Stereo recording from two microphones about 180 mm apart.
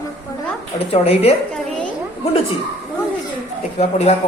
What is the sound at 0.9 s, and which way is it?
Speech, 35° left (ahead or behind).